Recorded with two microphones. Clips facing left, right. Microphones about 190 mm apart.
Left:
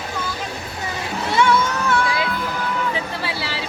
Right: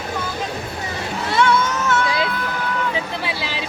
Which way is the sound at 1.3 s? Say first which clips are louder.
Even; 10° left (ahead or behind).